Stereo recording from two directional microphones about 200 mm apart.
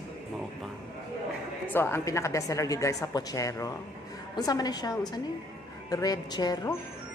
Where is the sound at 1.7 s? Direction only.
10° left (ahead or behind).